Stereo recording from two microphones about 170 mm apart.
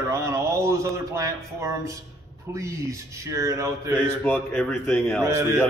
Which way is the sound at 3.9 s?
5° left (ahead or behind).